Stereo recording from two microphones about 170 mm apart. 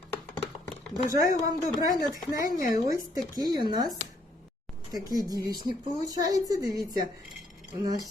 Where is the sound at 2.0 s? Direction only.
20° right (ahead or behind).